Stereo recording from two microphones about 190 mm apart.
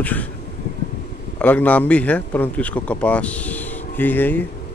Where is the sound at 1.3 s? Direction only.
5° left (ahead or behind).